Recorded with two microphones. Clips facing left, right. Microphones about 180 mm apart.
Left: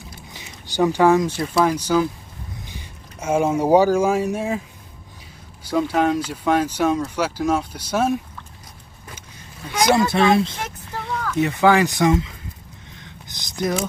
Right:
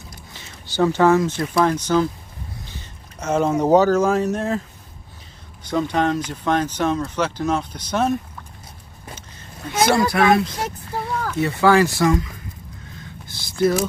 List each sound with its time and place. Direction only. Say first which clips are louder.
0.3 s speech: left 1 dB; 15° left (ahead or behind)
5.7 s speech: left 1 dB; 5° left (ahead or behind)
9.8 s speech: even; 25° left (ahead or behind)
13.3 s speech: right 5 dB; 15° left (ahead or behind)